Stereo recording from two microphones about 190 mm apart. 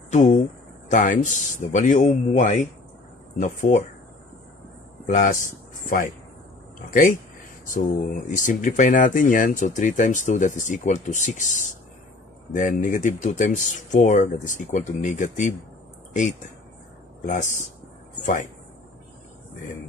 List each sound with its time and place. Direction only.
0.1 s speech: 40° left (ahead or behind)
5.0 s speech: 45° left (ahead or behind)
17.3 s speech: 40° left (ahead or behind)